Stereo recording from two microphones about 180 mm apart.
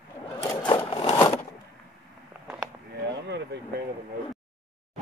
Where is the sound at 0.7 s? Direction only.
25° left (ahead or behind).